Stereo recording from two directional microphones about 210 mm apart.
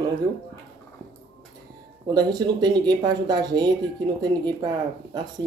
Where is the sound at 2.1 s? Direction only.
20° right (ahead or behind).